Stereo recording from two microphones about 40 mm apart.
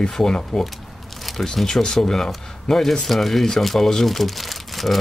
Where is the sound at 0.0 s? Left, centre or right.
Centre.